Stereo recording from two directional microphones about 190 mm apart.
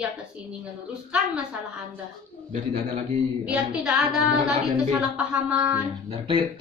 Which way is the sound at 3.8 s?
5° right (ahead or behind).